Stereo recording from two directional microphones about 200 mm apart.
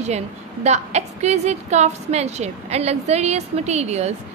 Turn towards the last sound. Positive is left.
turn(degrees=-35)  # may be behind; listen again after turning